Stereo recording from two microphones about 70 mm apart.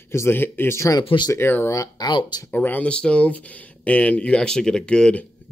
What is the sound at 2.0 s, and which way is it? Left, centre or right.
Speech, left.